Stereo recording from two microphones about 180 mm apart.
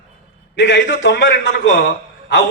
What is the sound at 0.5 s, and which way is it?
A man's voice, 80° left.